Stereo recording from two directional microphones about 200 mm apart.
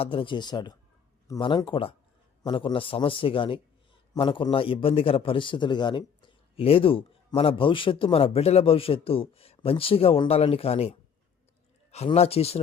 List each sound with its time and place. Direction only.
0.0 s a man's voice: 25° left (ahead or behind)